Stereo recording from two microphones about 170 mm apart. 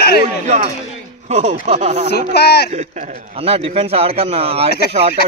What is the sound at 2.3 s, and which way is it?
Speech, 70° left (ahead or behind).